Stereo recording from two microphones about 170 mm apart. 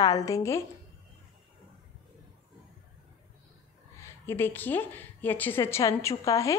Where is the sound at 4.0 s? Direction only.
15° left (ahead or behind).